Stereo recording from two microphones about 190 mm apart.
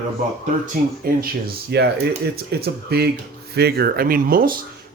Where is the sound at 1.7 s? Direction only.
60° right (ahead or behind).